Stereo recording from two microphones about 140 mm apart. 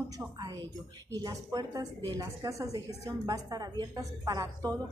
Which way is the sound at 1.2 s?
25° right (ahead or behind).